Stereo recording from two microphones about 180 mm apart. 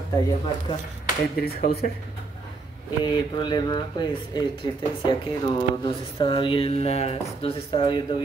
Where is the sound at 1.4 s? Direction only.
60° left (ahead or behind).